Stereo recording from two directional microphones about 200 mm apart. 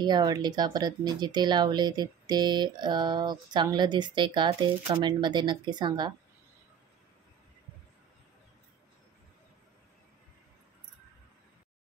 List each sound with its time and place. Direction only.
0.0 s speech: 20° right (ahead or behind)